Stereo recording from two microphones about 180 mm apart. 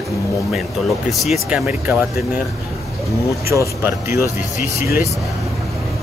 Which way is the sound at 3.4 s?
15° right (ahead or behind).